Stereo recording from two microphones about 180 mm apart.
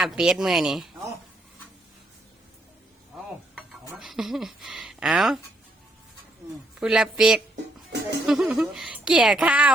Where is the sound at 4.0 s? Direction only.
Centre (ahead or behind).